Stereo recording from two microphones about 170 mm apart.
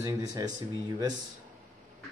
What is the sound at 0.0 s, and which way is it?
Speech, 20° right (ahead or behind).